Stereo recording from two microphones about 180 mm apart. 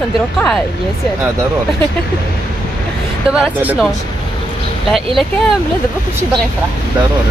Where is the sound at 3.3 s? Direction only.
5° right (ahead or behind).